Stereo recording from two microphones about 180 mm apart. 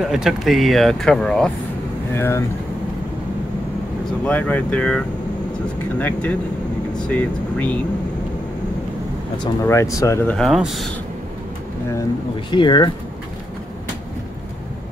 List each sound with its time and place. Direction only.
0.0 s speech: centre (ahead or behind)
2.1 s speech: 15° left (ahead or behind)
4.2 s speech: 10° left (ahead or behind)
9.4 s speech: 15° left (ahead or behind)
10.3 s speech: centre (ahead or behind)
11.9 s speech: 20° left (ahead or behind)